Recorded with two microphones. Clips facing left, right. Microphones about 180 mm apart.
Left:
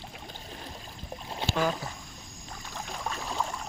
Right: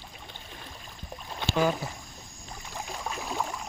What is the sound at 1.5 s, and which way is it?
Speech, 10° right (ahead or behind).